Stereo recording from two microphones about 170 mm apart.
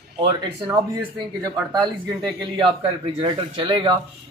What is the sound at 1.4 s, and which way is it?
Speech, 25° right (ahead or behind).